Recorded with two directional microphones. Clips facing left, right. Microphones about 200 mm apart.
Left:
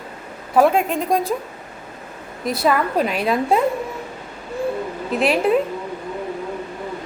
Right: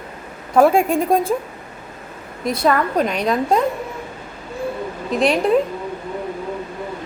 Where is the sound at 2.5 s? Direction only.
5° left (ahead or behind).